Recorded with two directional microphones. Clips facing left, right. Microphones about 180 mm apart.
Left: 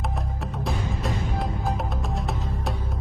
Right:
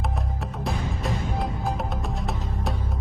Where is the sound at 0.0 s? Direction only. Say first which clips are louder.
Even; centre (ahead or behind).